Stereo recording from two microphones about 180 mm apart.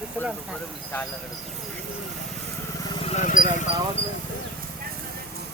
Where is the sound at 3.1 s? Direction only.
40° left (ahead or behind).